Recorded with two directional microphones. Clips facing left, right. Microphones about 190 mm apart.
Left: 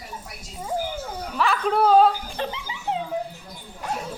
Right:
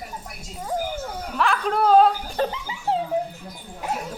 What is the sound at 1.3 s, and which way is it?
Speech, centre (ahead or behind).